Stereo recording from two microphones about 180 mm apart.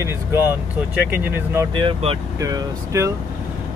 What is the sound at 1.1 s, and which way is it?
Speech, 10° right (ahead or behind).